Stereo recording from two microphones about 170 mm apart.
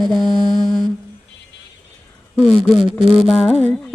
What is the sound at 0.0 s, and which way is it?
Music, centre (ahead or behind).